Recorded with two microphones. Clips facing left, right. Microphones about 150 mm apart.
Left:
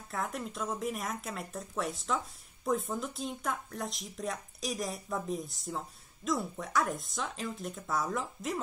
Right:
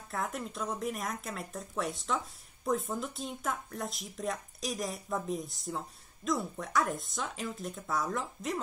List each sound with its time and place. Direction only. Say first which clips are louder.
0.1 s speech: even; centre (ahead or behind)